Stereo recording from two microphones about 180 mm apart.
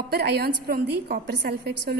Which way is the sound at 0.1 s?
60° right (ahead or behind).